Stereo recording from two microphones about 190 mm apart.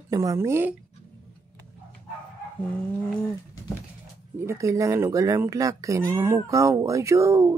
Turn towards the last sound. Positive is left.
turn(degrees=-15)  # may be behind; listen again after turning